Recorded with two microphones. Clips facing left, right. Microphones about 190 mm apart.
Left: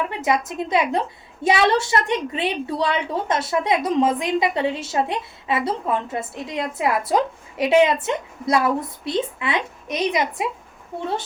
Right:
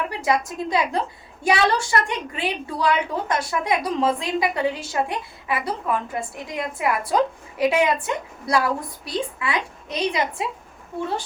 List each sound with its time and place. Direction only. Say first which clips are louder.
0.1 s a woman's voice: left 1 dB; 20° left (ahead or behind)